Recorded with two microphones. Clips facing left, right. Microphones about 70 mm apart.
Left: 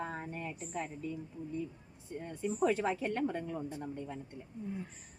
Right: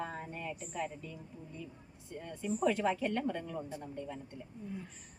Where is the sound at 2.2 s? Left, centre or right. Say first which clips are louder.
Left 1 dB; centre.